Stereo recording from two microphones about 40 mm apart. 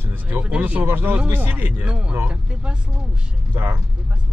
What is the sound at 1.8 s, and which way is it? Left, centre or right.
Speech, right.